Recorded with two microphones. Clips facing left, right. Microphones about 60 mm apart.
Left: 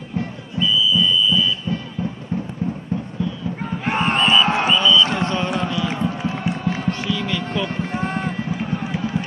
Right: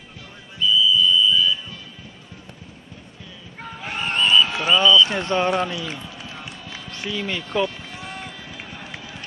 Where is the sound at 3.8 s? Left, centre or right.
Left.